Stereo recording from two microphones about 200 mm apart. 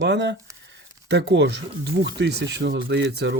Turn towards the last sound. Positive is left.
turn(degrees=-60)  # may be behind; listen again after turning